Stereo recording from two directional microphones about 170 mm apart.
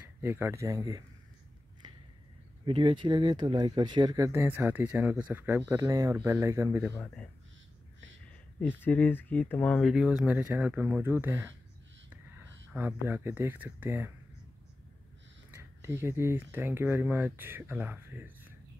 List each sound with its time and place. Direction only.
0.2 s speech: 15° right (ahead or behind)
2.6 s speech: 30° right (ahead or behind)
8.5 s speech: 10° left (ahead or behind); by 11.5 s 15° right (ahead or behind)
12.7 s speech: 10° right (ahead or behind)
15.5 s speech: 15° right (ahead or behind)